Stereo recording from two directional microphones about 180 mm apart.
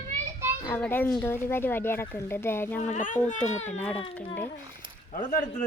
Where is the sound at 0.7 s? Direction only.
10° left (ahead or behind).